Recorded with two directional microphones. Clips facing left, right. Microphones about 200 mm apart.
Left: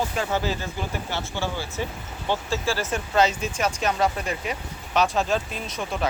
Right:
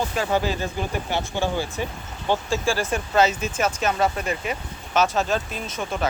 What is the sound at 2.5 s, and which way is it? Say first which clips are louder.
Speech: right 2 dB; 15° right (ahead or behind).